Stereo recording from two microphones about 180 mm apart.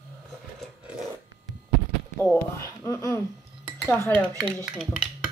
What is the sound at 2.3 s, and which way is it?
Speech, 15° left (ahead or behind).